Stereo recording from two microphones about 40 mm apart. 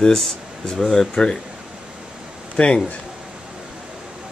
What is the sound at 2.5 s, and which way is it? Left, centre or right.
Speech, left.